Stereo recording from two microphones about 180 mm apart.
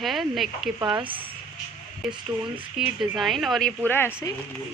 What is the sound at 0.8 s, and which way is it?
Speech, 25° right (ahead or behind).